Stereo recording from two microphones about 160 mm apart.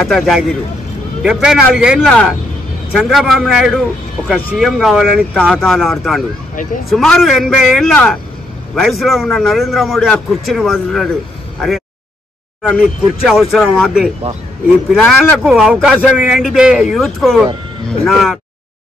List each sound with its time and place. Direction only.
0.0 s speech: centre (ahead or behind)
6.5 s speech: 55° left (ahead or behind)
6.9 s speech: centre (ahead or behind)
12.6 s speech: centre (ahead or behind)